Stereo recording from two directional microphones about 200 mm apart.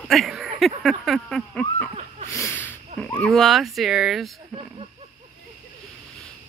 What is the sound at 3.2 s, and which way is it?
Speech, centre (ahead or behind).